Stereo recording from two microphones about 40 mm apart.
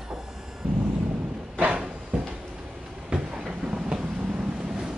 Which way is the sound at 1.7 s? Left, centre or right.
Right.